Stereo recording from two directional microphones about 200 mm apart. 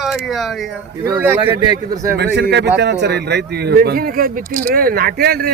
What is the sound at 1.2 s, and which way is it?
Speech, 10° right (ahead or behind).